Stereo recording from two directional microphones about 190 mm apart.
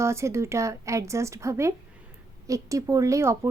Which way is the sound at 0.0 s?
15° right (ahead or behind).